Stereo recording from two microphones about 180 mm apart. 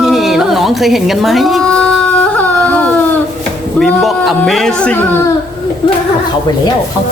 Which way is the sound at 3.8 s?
Centre (ahead or behind).